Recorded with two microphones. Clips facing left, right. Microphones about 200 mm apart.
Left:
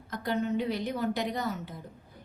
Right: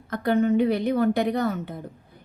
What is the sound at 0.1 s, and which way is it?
A woman's voice, 60° right (ahead or behind).